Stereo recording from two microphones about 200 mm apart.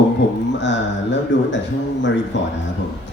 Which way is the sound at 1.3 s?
65° left (ahead or behind).